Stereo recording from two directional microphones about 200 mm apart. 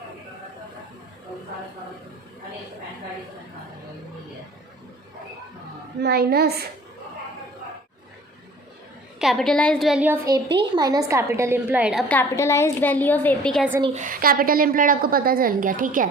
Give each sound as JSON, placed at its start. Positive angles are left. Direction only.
{"t": 6.0, "sound": "a woman's voice", "side_deg": -50}
{"t": 9.1, "sound": "a woman's voice", "side_deg": 0}
{"t": 10.2, "sound": "a woman's voice", "side_deg": -20}
{"t": 12.0, "sound": "a woman's voice", "side_deg": 10}
{"t": 13.9, "sound": "a woman's voice", "side_deg": -40}